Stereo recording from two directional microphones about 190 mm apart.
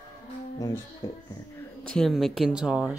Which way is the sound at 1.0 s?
15° left (ahead or behind).